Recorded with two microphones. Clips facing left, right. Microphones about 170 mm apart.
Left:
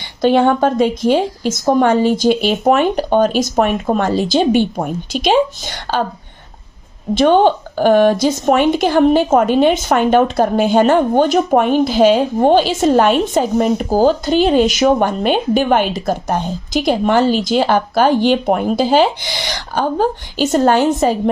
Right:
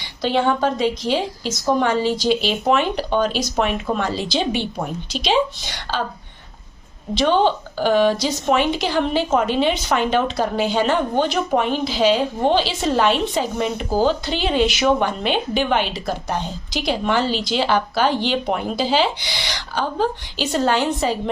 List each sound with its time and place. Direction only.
0.2 s a woman's voice: 50° left (ahead or behind)
7.1 s a woman's voice: 50° left (ahead or behind)